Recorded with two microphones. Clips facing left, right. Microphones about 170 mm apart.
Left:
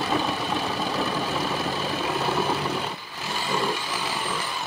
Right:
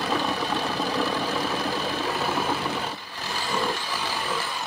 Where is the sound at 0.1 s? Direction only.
Centre (ahead or behind).